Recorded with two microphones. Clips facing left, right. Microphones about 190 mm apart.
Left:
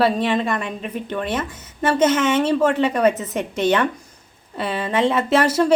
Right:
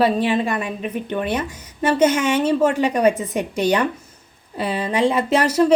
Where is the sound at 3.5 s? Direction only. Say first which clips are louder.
Left 1 dB; 40° right (ahead or behind).